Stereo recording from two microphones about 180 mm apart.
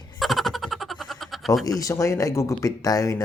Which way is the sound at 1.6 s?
20° left (ahead or behind).